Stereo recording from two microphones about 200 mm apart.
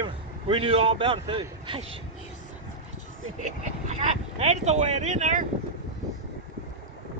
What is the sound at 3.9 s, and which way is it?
Speech, 35° right (ahead or behind).